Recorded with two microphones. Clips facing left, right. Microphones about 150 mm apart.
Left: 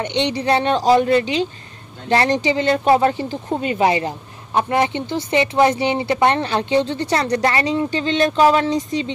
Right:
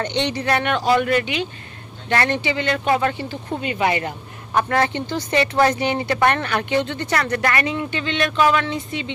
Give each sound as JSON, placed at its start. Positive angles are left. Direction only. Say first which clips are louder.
{"t": 0.0, "sound": "speech", "louder": "left 2 dB", "side_deg": 20}
{"t": 4.6, "sound": "speech", "louder": "left 1 dB", "side_deg": 20}